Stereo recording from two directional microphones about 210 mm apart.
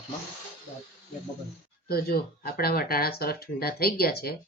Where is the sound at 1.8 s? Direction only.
45° left (ahead or behind).